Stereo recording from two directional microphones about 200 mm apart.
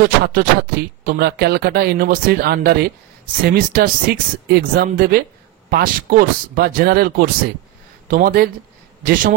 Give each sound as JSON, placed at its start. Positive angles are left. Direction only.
{"t": 0.0, "sound": "speech", "side_deg": -45}